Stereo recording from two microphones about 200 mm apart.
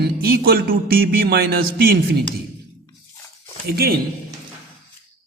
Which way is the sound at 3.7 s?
50° right (ahead or behind).